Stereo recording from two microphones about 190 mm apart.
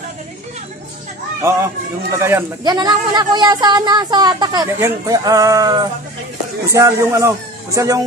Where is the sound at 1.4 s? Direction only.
15° right (ahead or behind).